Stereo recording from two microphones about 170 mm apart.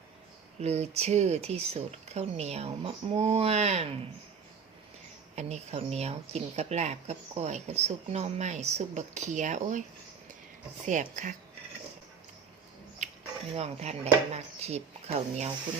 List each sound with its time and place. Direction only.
0.6 s speech: 40° right (ahead or behind)
5.3 s speech: 40° right (ahead or behind)
10.8 s speech: 45° right (ahead or behind)
13.0 s a sound: 45° right (ahead or behind)
13.6 s speech: 40° right (ahead or behind)